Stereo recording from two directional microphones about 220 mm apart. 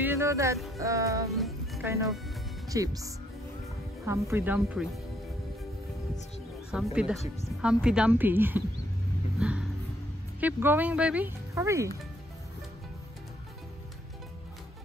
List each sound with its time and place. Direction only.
0.0 s speech: 10° right (ahead or behind)
1.3 s music: centre (ahead or behind)
2.7 s speech: 15° right (ahead or behind)
6.7 s speech: 5° right (ahead or behind)
9.4 s a sound: 5° right (ahead or behind)
10.4 s speech: 10° right (ahead or behind)